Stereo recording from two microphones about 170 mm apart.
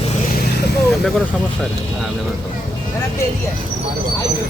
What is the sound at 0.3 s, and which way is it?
Vehicle, 60° left (ahead or behind).